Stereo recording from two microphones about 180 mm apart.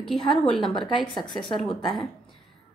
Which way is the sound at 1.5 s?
Centre (ahead or behind).